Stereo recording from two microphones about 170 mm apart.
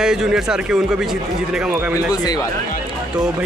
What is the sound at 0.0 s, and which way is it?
Speech, 5° right (ahead or behind).